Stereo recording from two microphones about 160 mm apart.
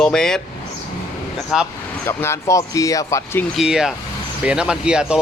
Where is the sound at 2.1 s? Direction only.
15° left (ahead or behind).